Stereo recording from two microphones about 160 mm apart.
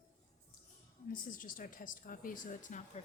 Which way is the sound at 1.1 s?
55° left (ahead or behind).